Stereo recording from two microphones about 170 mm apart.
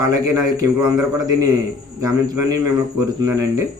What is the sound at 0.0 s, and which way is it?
Speech, 20° right (ahead or behind).